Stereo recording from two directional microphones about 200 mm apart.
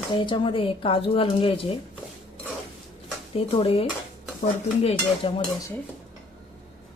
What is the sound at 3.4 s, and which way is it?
Speech, 30° left (ahead or behind).